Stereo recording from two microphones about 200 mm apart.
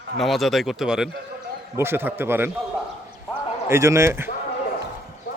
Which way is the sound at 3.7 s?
15° right (ahead or behind).